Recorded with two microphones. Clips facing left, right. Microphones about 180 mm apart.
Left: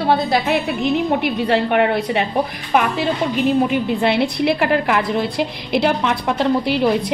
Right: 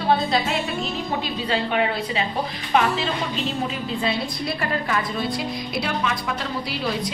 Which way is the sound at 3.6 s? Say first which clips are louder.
Left 8 dB; 70° left (ahead or behind).